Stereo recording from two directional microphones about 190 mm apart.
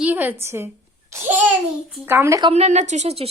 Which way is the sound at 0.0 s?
10° right (ahead or behind).